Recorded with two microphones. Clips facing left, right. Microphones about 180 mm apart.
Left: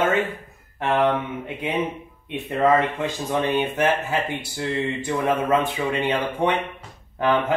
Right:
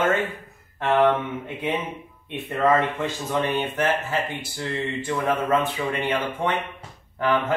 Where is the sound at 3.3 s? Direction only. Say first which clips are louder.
Left 3 dB; 15° left (ahead or behind).